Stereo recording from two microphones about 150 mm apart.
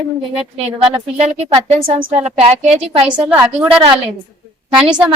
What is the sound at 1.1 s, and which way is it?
A woman's voice, 45° right (ahead or behind).